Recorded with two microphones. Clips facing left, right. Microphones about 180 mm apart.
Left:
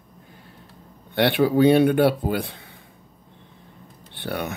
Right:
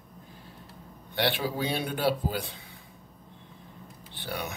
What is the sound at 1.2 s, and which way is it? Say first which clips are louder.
Speech: left 11 dB; 60° left (ahead or behind).